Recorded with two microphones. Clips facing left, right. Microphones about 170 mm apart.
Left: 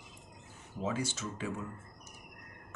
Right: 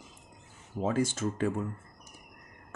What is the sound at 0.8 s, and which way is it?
Speech, 50° right (ahead or behind).